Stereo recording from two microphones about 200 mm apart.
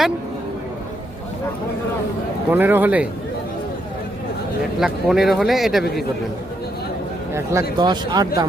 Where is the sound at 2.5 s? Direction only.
10° right (ahead or behind).